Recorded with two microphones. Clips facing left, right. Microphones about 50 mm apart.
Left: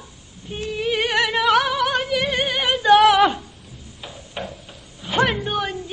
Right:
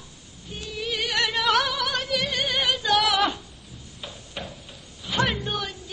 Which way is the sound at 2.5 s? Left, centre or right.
Centre.